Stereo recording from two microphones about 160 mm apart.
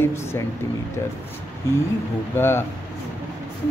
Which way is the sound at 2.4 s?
15° left (ahead or behind).